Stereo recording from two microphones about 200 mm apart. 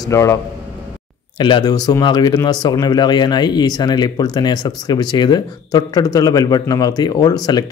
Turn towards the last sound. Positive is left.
turn(degrees=20)  # may be behind; listen again after turning